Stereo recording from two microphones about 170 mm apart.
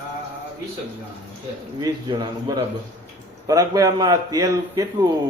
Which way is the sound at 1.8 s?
20° right (ahead or behind).